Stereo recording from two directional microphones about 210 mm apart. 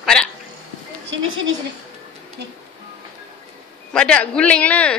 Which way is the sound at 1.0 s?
65° right (ahead or behind).